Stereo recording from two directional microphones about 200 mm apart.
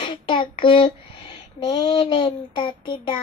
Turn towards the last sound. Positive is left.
turn(degrees=25)  # may be behind; listen again after turning